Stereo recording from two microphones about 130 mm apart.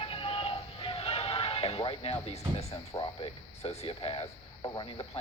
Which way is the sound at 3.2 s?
50° left (ahead or behind).